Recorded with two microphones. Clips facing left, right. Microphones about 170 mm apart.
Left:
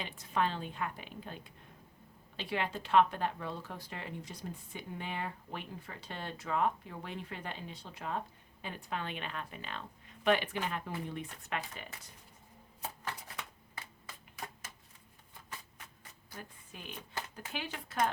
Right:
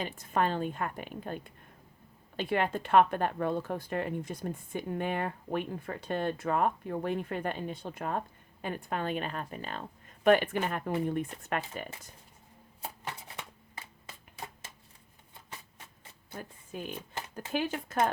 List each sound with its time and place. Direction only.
0.0 s speech: 50° right (ahead or behind)
13.1 s shuffling cards: 25° right (ahead or behind)
16.4 s speech: 45° right (ahead or behind)